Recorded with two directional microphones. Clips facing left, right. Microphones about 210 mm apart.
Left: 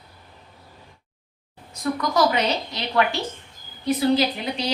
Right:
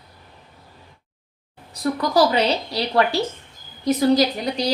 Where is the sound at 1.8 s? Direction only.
35° right (ahead or behind).